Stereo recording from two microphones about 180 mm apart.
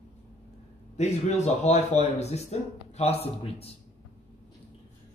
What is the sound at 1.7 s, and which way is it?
Speech, 40° left (ahead or behind).